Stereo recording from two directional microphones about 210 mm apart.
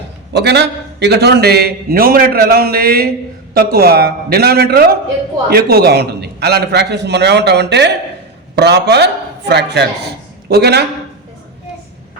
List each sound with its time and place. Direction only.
0.3 s a man's voice: 55° right (ahead or behind)